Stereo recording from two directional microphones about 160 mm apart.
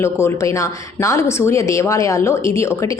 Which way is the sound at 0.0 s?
15° left (ahead or behind).